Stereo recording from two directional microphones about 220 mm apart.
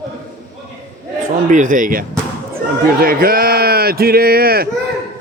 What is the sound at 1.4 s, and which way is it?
A man's voice, 35° right (ahead or behind).